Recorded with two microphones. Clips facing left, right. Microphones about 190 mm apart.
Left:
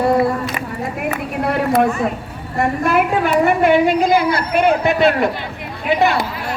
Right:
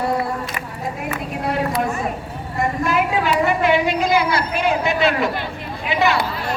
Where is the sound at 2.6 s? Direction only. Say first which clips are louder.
Left 4 dB; 60° left (ahead or behind).